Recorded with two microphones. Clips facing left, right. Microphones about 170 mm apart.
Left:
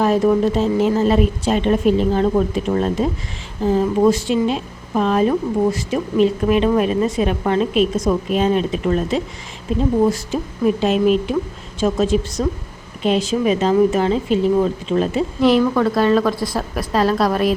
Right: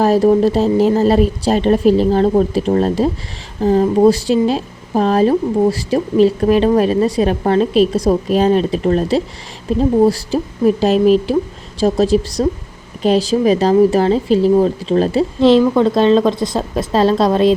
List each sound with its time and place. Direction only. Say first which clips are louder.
0.0 s speech: right 4 dB; 35° right (ahead or behind)